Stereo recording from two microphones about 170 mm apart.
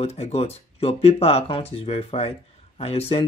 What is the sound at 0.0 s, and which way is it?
Speech, 40° left (ahead or behind).